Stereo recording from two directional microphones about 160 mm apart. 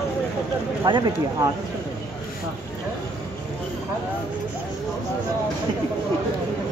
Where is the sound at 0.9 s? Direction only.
25° right (ahead or behind).